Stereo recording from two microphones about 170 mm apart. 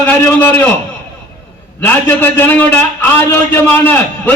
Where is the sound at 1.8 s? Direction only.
10° left (ahead or behind).